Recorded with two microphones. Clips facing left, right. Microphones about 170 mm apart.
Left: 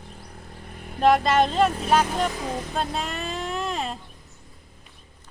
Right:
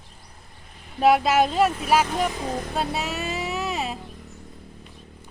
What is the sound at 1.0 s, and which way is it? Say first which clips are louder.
Speech: even; 5° right (ahead or behind).